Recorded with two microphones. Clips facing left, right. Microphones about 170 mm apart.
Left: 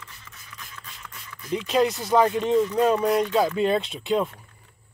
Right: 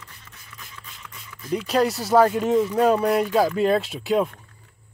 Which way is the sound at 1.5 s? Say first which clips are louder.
Right 1 dB; centre (ahead or behind).